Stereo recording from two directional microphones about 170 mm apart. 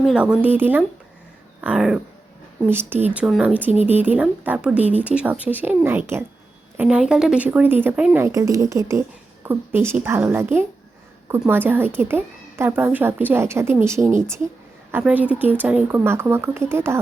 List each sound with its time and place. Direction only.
0.0 s speech: 5° right (ahead or behind)